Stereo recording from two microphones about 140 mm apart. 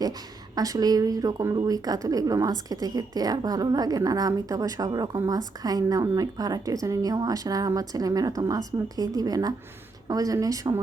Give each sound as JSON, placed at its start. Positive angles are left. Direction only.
{"t": 0.5, "sound": "a woman's voice", "side_deg": -25}